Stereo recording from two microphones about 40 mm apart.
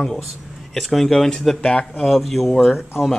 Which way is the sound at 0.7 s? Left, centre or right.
Centre.